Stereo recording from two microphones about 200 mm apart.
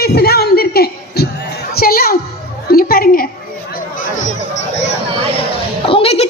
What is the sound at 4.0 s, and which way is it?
Chatter, 40° left (ahead or behind).